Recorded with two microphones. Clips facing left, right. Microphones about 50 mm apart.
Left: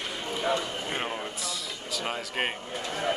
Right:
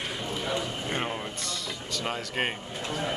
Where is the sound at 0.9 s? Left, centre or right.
Centre.